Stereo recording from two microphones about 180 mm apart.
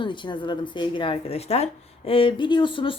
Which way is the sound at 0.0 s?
25° left (ahead or behind).